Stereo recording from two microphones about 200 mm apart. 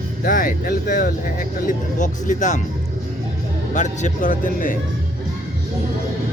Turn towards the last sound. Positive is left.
turn(degrees=40)  # may be behind; listen again after turning